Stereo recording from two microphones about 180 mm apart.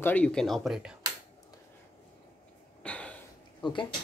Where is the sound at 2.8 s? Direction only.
5° left (ahead or behind).